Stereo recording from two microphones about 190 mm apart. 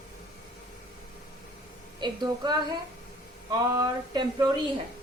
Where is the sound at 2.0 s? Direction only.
20° right (ahead or behind).